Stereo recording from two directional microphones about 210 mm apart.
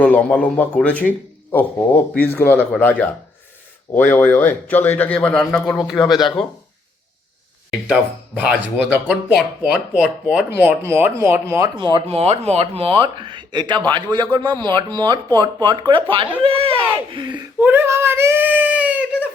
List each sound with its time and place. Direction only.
0.0 s a man's voice: 5° left (ahead or behind)
3.9 s a man's voice: 10° left (ahead or behind)
8.4 s speech: 5° right (ahead or behind)
17.6 s speech: 10° right (ahead or behind)